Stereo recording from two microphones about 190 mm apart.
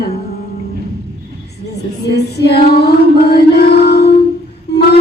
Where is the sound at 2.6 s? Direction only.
55° left (ahead or behind).